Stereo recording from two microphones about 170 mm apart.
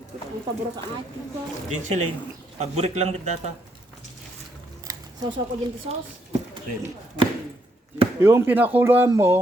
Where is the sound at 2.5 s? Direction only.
40° right (ahead or behind).